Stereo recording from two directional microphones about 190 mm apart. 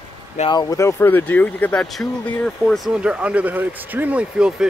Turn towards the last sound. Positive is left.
turn(degrees=-5)  # may be behind; listen again after turning